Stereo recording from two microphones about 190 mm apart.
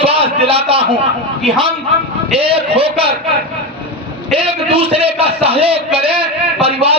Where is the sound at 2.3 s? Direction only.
30° right (ahead or behind).